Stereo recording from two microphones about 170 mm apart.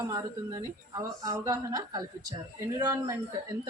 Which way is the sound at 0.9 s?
20° right (ahead or behind).